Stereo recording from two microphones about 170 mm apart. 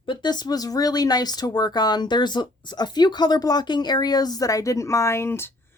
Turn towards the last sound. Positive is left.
turn(degrees=15)  # may be behind; listen again after turning